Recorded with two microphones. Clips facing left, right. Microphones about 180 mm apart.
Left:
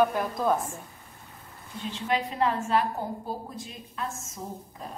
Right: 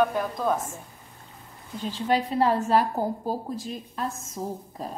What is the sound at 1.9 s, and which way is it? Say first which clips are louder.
A woman's voice: right 4 dB; 35° right (ahead or behind).